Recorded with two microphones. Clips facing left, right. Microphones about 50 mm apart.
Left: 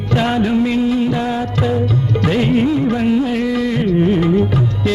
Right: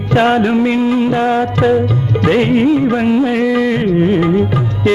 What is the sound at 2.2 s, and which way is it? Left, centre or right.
Music, right.